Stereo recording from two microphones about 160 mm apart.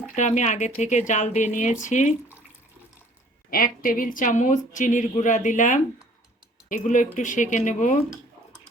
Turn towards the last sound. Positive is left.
turn(degrees=55)  # may be behind; listen again after turning